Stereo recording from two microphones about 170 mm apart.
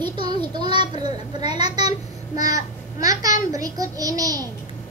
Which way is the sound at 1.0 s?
25° right (ahead or behind).